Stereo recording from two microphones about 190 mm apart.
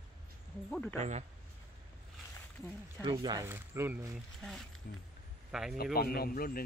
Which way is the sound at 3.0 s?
20° right (ahead or behind).